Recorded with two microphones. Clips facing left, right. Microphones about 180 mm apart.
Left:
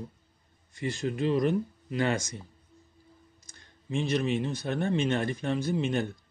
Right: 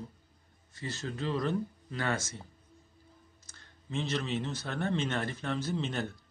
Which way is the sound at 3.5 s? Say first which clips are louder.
Left 5 dB; 15° left (ahead or behind).